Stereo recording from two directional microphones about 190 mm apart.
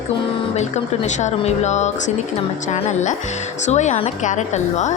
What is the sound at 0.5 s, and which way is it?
A woman's voice, 40° left (ahead or behind).